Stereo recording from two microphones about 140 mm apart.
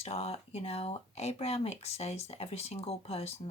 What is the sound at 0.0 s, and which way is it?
Speech, 50° left (ahead or behind).